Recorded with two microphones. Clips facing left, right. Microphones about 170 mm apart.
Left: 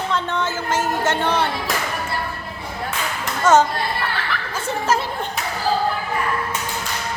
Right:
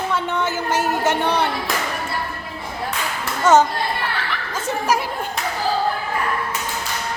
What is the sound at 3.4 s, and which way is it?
Speech, 15° right (ahead or behind).